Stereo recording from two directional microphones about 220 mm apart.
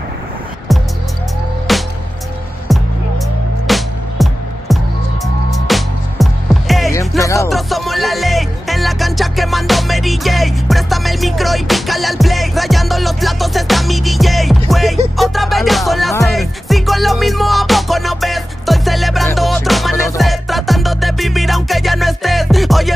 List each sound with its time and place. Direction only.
1.7 s music: centre (ahead or behind)
6.9 s music: 15° left (ahead or behind)
7.4 s music: centre (ahead or behind)